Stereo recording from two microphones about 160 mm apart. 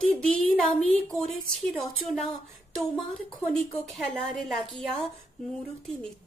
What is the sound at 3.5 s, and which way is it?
Speech, 5° left (ahead or behind).